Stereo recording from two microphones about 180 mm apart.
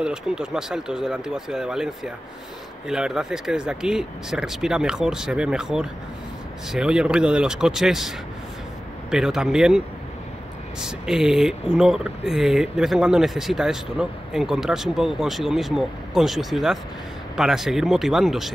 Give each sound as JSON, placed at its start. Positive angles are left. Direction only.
{"t": 0.0, "sound": "speech", "side_deg": -5}
{"t": 9.1, "sound": "speech", "side_deg": 0}